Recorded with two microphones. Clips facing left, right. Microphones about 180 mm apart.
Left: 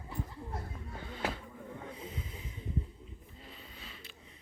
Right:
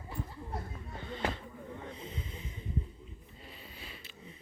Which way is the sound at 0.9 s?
5° left (ahead or behind).